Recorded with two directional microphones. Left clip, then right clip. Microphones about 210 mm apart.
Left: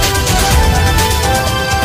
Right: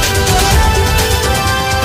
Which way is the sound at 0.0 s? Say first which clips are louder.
Right 1 dB; centre (ahead or behind).